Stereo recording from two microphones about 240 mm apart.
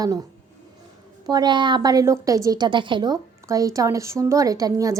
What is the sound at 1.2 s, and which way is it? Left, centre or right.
A woman's voice, centre.